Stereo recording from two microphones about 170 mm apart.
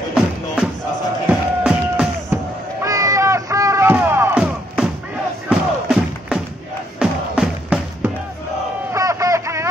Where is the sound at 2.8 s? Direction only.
20° right (ahead or behind).